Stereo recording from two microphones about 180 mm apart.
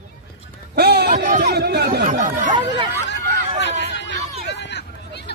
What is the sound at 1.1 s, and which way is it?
Speech, 45° right (ahead or behind).